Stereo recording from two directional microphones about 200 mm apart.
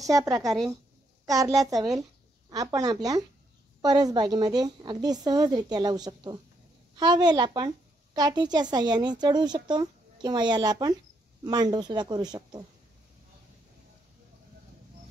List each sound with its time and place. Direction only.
0.1 s a child's voice: 15° right (ahead or behind)